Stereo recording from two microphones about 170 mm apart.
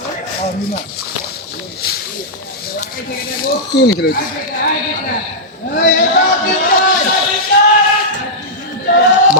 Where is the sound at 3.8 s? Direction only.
75° left (ahead or behind).